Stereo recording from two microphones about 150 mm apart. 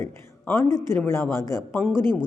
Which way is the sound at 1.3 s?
25° right (ahead or behind).